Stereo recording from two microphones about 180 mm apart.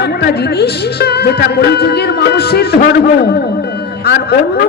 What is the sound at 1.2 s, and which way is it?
Speech, 65° left (ahead or behind).